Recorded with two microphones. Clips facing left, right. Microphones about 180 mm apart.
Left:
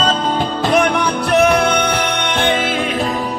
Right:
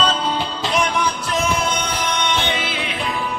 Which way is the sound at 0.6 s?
55° left (ahead or behind).